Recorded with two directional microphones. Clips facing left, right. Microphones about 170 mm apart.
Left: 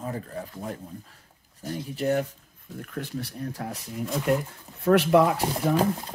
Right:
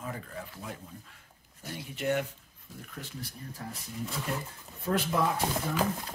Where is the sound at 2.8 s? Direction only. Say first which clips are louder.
Left 9 dB; 65° left (ahead or behind).